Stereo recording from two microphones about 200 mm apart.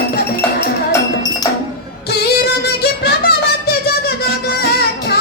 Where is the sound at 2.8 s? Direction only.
50° left (ahead or behind).